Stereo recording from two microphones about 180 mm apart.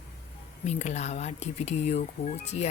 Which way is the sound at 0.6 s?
40° left (ahead or behind).